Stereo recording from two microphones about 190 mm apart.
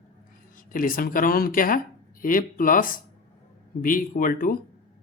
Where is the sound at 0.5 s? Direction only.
45° left (ahead or behind).